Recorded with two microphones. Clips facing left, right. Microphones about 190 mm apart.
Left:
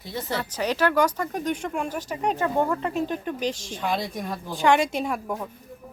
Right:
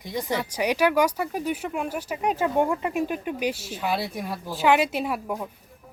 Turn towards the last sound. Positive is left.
turn(degrees=-5)  # may be behind; listen again after turning